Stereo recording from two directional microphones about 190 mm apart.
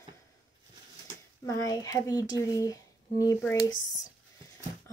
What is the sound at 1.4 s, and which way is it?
Speech, 20° left (ahead or behind).